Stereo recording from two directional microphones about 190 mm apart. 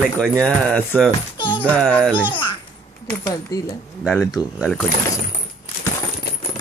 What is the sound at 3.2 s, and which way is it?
Speech, 20° left (ahead or behind).